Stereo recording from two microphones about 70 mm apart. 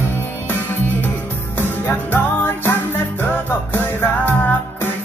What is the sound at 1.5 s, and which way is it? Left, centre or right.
Music, left.